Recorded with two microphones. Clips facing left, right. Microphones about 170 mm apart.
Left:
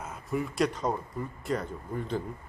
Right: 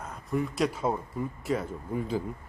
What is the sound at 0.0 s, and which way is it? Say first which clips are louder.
Speech: right 2 dB; 5° left (ahead or behind).